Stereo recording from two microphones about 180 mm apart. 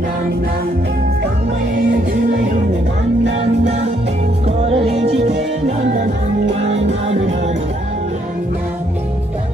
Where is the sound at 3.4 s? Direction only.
40° right (ahead or behind).